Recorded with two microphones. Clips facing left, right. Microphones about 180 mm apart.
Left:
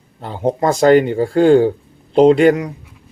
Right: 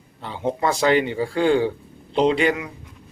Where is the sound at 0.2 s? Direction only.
45° left (ahead or behind).